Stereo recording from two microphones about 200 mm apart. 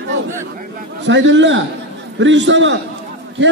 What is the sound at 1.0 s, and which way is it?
A man's voice, 65° right (ahead or behind).